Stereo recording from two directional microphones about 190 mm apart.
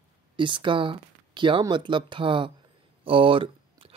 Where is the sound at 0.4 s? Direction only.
25° right (ahead or behind).